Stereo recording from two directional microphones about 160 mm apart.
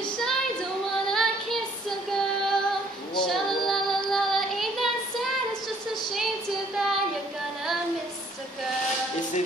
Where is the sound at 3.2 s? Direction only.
Centre (ahead or behind).